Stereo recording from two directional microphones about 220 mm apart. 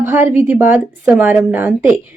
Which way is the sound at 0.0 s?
10° right (ahead or behind).